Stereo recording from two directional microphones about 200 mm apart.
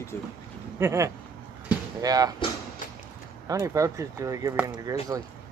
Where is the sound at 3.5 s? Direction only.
15° right (ahead or behind).